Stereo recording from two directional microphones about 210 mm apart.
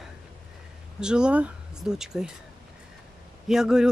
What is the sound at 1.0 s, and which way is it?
Speech, 5° right (ahead or behind).